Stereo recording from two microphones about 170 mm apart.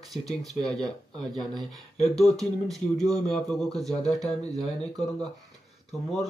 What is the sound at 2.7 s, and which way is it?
Speech, centre (ahead or behind).